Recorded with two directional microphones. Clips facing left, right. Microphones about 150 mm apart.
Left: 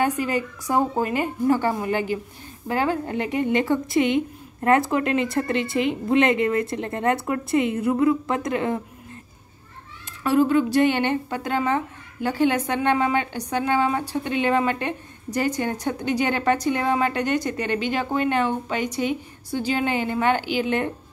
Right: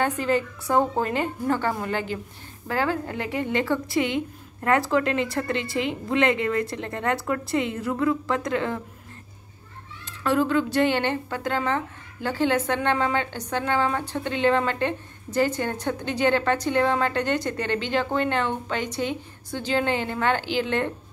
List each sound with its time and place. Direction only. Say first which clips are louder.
0.0 s speech: left 1 dB; 10° left (ahead or behind)
10.2 s speech: left 3 dB; 15° left (ahead or behind)